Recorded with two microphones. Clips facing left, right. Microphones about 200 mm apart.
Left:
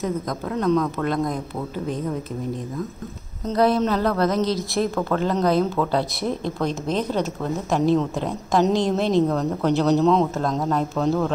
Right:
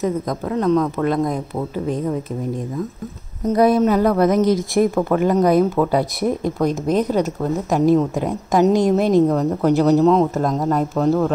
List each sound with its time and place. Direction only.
0.0 s a woman's voice: 5° right (ahead or behind)
3.4 s speech: 15° right (ahead or behind)
6.7 s a woman's voice: 40° right (ahead or behind)
7.9 s speech: 10° right (ahead or behind)